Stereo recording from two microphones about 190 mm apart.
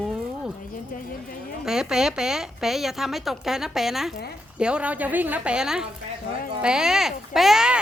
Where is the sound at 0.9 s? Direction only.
50° left (ahead or behind).